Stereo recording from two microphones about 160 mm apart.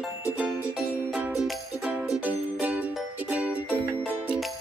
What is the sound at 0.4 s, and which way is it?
Music, 5° right (ahead or behind).